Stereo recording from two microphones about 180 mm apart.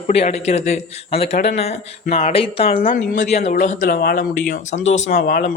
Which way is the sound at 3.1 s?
40° left (ahead or behind).